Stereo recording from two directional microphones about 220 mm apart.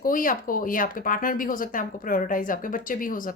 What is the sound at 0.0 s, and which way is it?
Speech, 40° left (ahead or behind).